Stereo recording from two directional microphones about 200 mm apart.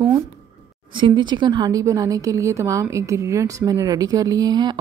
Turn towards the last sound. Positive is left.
turn(degrees=-20)  # may be behind; listen again after turning